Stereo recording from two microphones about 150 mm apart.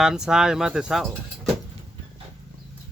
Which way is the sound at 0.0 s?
5° right (ahead or behind).